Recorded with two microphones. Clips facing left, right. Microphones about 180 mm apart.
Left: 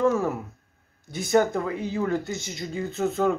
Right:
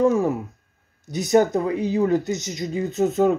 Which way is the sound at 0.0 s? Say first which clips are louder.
Right 4 dB; 15° right (ahead or behind).